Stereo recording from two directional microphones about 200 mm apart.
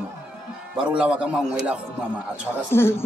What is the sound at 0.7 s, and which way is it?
A man's voice, 5° right (ahead or behind).